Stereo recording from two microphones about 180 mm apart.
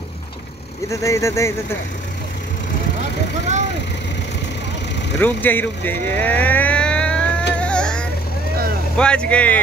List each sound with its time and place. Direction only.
0.8 s speech: 15° left (ahead or behind)
5.2 s speech: 10° left (ahead or behind)
7.6 s music: 5° left (ahead or behind)
8.9 s speech: 5° left (ahead or behind)